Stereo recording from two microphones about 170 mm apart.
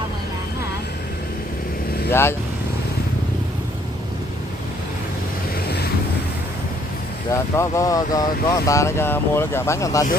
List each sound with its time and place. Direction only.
2.0 s speech: 15° left (ahead or behind)
7.2 s speech: 20° left (ahead or behind)